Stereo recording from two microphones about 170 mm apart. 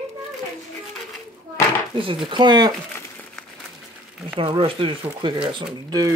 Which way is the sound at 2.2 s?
25° right (ahead or behind).